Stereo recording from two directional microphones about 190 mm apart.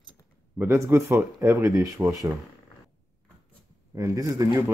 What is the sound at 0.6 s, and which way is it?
Speech, 15° right (ahead or behind).